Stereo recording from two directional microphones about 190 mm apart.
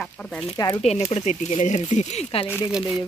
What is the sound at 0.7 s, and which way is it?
Speech, 35° left (ahead or behind).